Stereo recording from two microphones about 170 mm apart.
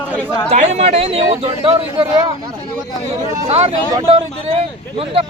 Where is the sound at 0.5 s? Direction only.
40° right (ahead or behind).